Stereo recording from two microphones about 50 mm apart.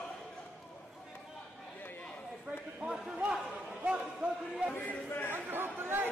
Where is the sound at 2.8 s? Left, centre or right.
Right.